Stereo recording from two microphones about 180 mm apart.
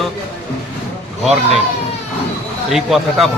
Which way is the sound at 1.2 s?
Centre (ahead or behind).